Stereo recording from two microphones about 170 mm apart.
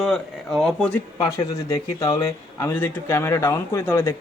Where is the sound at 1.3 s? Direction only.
20° left (ahead or behind).